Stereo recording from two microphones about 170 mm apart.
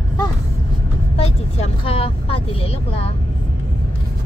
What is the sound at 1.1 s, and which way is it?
Vehicle, 35° left (ahead or behind).